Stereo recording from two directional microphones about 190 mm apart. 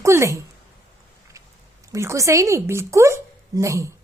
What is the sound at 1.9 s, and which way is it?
A woman's voice, 15° right (ahead or behind).